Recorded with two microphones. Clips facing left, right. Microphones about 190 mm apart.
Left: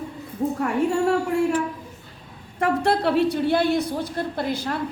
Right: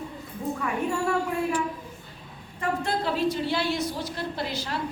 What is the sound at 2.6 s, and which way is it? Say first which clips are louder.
A woman's voice: left 7 dB; 70° left (ahead or behind).